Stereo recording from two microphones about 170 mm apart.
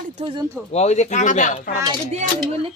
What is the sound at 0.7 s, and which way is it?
Speech, 40° left (ahead or behind).